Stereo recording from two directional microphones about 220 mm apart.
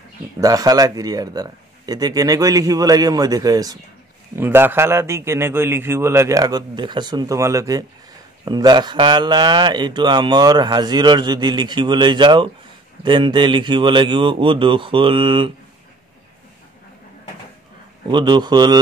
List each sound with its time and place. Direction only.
0.4 s a man's voice: 15° right (ahead or behind)
18.1 s speech: 20° right (ahead or behind)